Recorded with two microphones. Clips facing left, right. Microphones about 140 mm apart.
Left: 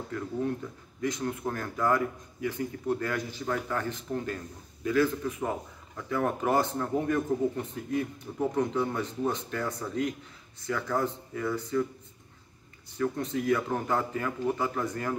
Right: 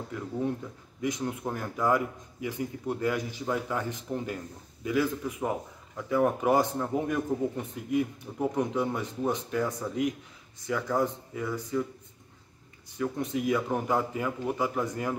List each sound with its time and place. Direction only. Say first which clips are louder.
0.1 s a man's voice: even; 20° right (ahead or behind)
12.9 s a man's voice: left 1 dB; 15° right (ahead or behind)